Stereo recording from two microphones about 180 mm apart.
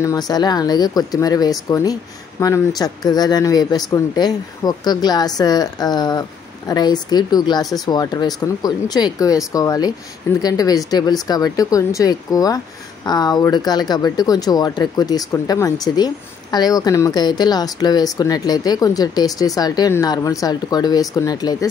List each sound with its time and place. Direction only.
0.0 s speech: 20° left (ahead or behind)